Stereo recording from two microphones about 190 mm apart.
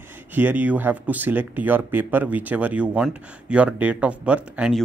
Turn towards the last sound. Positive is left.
turn(degrees=-5)  # may be behind; listen again after turning